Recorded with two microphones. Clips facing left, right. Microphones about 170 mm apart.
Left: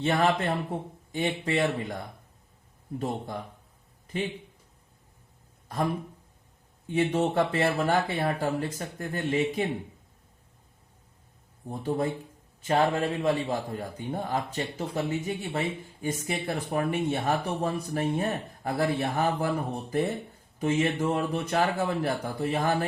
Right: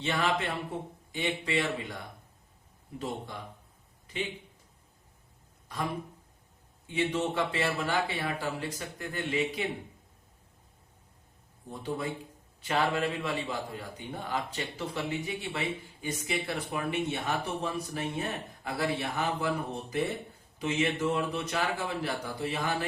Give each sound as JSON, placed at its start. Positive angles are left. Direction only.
{"t": 0.0, "sound": "a man's voice", "side_deg": 50}
{"t": 4.0, "sound": "a sound", "side_deg": 50}
{"t": 6.8, "sound": "a man's voice", "side_deg": 50}
{"t": 11.7, "sound": "a man's voice", "side_deg": 50}
{"t": 12.6, "sound": "a man's voice", "side_deg": 40}